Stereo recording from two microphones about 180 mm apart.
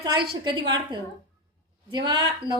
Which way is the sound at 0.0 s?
25° right (ahead or behind).